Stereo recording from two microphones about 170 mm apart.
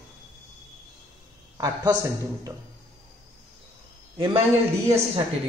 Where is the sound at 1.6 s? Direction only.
20° right (ahead or behind).